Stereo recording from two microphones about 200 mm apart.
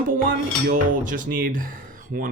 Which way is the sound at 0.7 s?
40° right (ahead or behind).